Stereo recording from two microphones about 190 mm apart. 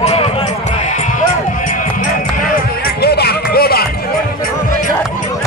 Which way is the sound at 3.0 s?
55° left (ahead or behind).